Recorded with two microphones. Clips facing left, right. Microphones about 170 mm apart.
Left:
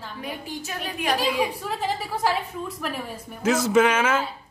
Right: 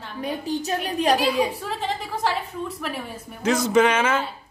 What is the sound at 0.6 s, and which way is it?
Speech, 35° right (ahead or behind).